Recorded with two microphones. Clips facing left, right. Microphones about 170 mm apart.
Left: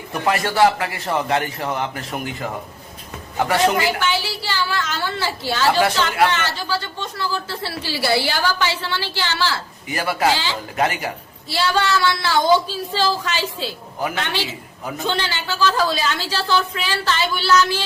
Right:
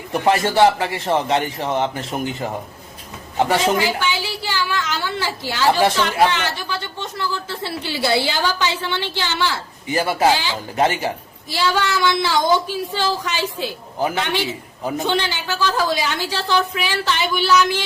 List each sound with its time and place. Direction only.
0.1 s a woman's voice: 25° right (ahead or behind)
3.3 s a woman's voice: 15° right (ahead or behind)
11.4 s a woman's voice: 15° right (ahead or behind)
14.9 s a woman's voice: 15° right (ahead or behind)